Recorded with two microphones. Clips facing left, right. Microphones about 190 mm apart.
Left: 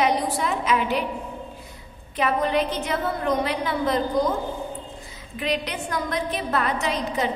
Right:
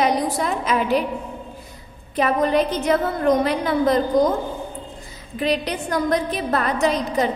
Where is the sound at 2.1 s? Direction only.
40° right (ahead or behind).